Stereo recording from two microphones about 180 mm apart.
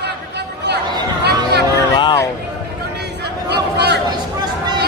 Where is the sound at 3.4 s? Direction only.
65° right (ahead or behind).